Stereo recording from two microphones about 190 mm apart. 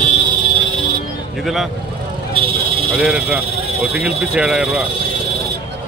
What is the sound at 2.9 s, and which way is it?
Speech, 5° right (ahead or behind).